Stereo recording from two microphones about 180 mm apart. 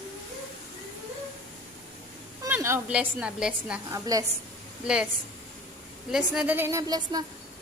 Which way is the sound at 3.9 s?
20° right (ahead or behind).